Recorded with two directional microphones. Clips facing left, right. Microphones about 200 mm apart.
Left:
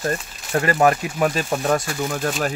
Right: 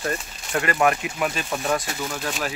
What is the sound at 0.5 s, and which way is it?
Speech, 35° left (ahead or behind).